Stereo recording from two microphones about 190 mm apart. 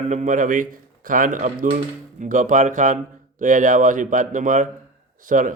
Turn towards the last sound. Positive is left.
turn(degrees=-45)  # may be behind; listen again after turning